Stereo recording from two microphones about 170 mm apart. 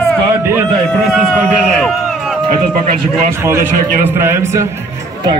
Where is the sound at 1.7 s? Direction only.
Centre (ahead or behind).